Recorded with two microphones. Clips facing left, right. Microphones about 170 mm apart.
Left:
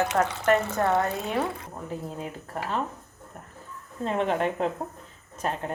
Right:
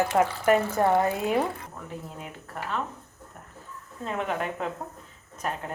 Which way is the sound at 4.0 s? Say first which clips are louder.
Left 4 dB; 30° left (ahead or behind).